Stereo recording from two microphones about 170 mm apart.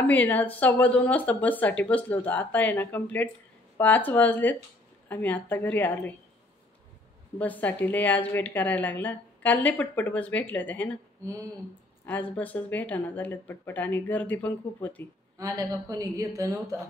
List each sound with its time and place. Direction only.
0.0 s a woman's voice: 10° left (ahead or behind)
7.3 s a woman's voice: 10° left (ahead or behind)
12.1 s a woman's voice: 10° left (ahead or behind)
15.3 s speech: 20° right (ahead or behind)